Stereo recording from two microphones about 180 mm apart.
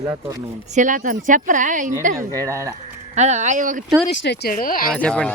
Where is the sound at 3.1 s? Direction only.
40° right (ahead or behind).